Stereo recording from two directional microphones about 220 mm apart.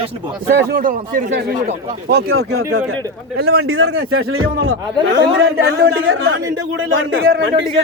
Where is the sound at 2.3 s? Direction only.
80° right.